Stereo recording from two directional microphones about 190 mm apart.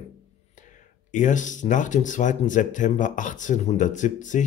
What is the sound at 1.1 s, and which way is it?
Speech, 40° left (ahead or behind).